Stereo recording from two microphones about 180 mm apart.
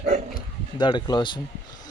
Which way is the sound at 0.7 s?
25° left (ahead or behind).